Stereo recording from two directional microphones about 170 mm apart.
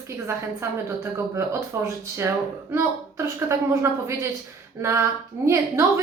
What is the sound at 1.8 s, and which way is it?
A woman's voice, 15° right (ahead or behind).